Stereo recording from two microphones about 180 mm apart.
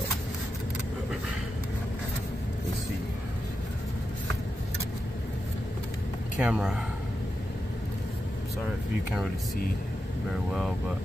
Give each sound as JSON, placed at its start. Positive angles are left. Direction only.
{"t": 6.4, "sound": "a man's voice", "side_deg": -5}